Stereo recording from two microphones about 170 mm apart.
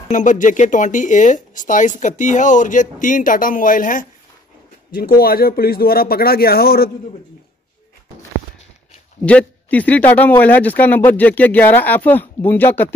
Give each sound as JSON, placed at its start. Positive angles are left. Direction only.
{"t": 0.1, "sound": "speech", "side_deg": 50}
{"t": 9.2, "sound": "speech", "side_deg": 10}